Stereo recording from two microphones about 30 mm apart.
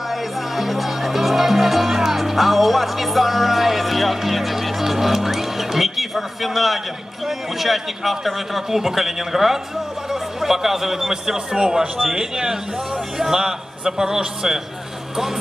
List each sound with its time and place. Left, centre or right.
0.1 s speech: centre